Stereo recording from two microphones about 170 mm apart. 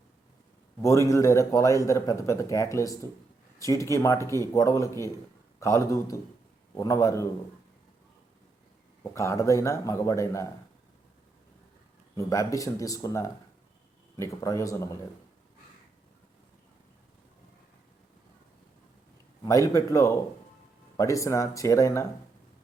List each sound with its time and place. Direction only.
0.8 s a man's voice: 15° left (ahead or behind)
9.1 s a man's voice: 15° left (ahead or behind)
12.1 s speech: 20° left (ahead or behind)
19.5 s a man's voice: 20° left (ahead or behind)